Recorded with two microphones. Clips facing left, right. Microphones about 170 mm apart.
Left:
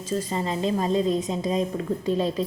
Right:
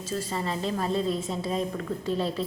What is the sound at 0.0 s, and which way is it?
A woman's voice, 20° left (ahead or behind).